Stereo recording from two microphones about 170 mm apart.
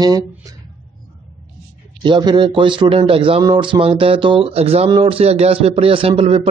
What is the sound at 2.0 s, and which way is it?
Speech, 30° right (ahead or behind).